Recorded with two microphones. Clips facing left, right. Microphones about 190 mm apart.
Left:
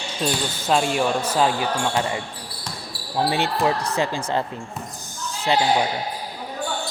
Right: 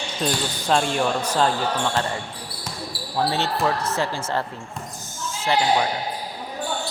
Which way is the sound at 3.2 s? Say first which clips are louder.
Left 1 dB; 15° left (ahead or behind).